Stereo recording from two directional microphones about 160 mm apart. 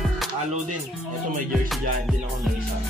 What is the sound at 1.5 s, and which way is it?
Music, centre (ahead or behind).